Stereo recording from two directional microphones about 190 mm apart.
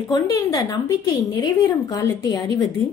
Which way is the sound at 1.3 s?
20° left (ahead or behind).